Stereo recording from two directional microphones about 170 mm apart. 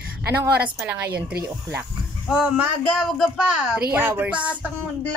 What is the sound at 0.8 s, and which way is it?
Speech, 10° right (ahead or behind).